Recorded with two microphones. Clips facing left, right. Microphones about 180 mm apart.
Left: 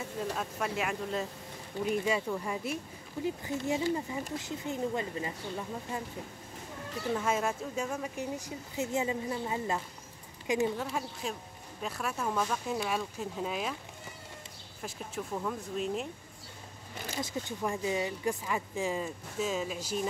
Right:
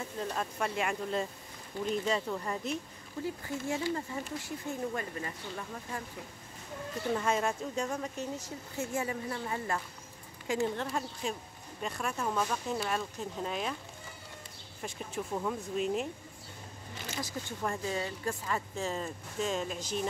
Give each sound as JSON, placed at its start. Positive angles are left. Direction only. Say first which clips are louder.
{"t": 0.2, "sound": "speech", "louder": "even", "side_deg": 5}
{"t": 3.3, "sound": "speech", "louder": "left 3 dB", "side_deg": 20}
{"t": 7.2, "sound": "a woman's voice", "louder": "even", "side_deg": 5}
{"t": 10.8, "sound": "speech", "louder": "even", "side_deg": 5}
{"t": 14.8, "sound": "speech", "louder": "right 1 dB", "side_deg": 0}
{"t": 17.2, "sound": "speech", "louder": "left 2 dB", "side_deg": 25}